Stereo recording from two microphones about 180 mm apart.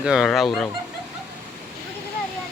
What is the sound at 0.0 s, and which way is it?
Speech, centre (ahead or behind).